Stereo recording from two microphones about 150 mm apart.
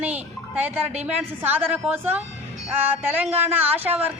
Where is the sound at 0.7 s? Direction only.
10° right (ahead or behind).